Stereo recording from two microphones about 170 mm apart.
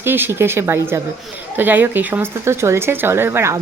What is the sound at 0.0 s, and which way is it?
Speech, 15° right (ahead or behind).